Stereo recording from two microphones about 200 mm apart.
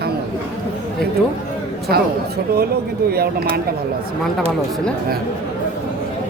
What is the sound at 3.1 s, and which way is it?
Speech, 50° right (ahead or behind).